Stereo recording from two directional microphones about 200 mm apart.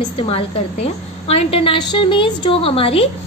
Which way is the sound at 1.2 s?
25° left (ahead or behind).